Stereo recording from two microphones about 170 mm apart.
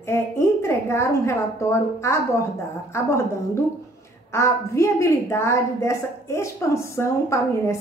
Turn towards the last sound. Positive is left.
turn(degrees=15)  # may be behind; listen again after turning